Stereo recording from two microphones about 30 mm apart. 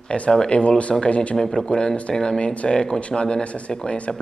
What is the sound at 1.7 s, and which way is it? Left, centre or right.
Speech, left.